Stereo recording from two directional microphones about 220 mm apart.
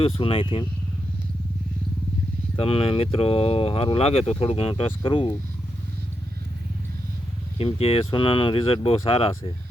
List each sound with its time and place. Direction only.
0.0 s speech: 25° left (ahead or behind)
2.6 s speech: 25° left (ahead or behind)
7.6 s speech: 25° left (ahead or behind)